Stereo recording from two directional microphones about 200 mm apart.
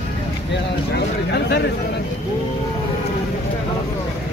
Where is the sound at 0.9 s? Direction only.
55° left (ahead or behind).